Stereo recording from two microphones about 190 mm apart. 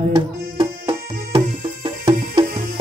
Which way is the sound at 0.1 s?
20° right (ahead or behind).